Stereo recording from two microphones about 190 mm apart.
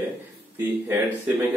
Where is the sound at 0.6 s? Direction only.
10° right (ahead or behind).